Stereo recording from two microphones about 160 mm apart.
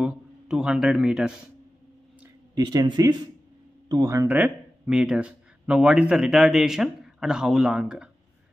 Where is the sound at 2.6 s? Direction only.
25° right (ahead or behind).